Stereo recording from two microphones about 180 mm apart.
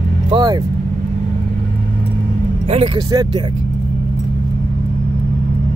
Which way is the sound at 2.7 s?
30° right (ahead or behind).